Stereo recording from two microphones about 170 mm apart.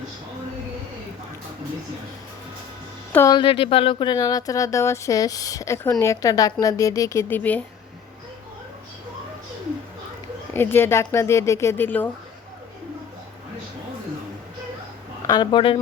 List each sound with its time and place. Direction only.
3.1 s speech: 15° left (ahead or behind)
3.3 s speech: 30° left (ahead or behind); by 7.6 s 10° left (ahead or behind)
10.5 s speech: 15° left (ahead or behind)
15.3 s speech: 25° left (ahead or behind)